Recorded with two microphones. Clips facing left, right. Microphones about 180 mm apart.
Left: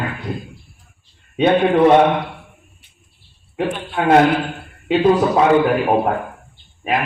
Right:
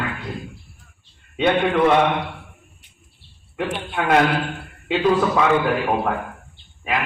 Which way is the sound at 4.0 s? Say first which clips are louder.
Left 5 dB; 30° left (ahead or behind).